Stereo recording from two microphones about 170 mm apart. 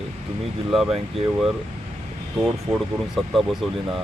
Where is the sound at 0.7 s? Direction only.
Centre (ahead or behind).